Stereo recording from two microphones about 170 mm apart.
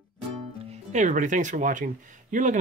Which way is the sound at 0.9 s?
45° right (ahead or behind).